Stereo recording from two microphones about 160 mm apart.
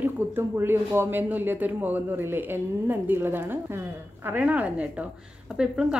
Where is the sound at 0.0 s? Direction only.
15° right (ahead or behind).